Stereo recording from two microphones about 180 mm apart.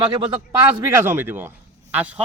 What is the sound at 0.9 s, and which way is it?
Speech, 15° right (ahead or behind).